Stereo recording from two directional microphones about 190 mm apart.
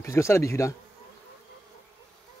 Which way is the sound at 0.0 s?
15° left (ahead or behind).